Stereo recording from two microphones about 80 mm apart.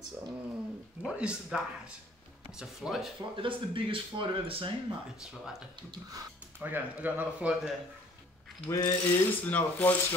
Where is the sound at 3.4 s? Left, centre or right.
Right.